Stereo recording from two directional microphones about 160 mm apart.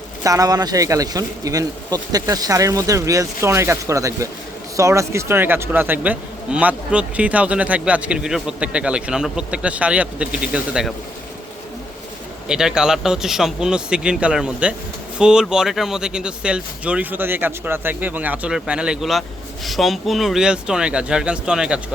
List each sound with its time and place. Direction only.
0.2 s speech: 20° right (ahead or behind); by 10.9 s 5° right (ahead or behind)
12.5 s speech: 5° right (ahead or behind)